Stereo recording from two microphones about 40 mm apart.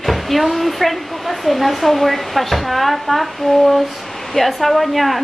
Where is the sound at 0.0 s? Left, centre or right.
Centre.